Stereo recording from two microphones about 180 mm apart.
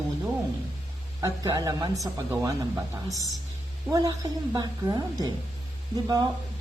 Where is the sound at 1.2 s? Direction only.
20° right (ahead or behind).